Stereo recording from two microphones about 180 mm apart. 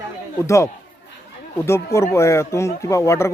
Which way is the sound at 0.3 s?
15° left (ahead or behind).